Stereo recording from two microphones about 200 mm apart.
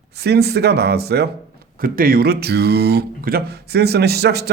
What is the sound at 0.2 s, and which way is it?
Speech, 55° right (ahead or behind).